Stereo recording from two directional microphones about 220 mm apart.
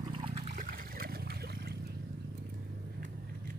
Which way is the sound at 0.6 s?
40° right (ahead or behind).